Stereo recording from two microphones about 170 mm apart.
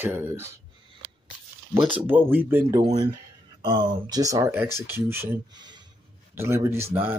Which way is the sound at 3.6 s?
25° right (ahead or behind).